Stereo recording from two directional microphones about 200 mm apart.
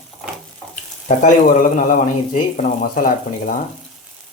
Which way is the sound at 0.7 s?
40° left (ahead or behind).